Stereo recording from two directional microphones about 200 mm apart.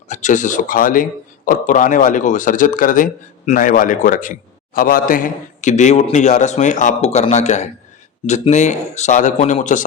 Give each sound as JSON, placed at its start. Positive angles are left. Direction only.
{"t": 0.1, "sound": "speech", "side_deg": 40}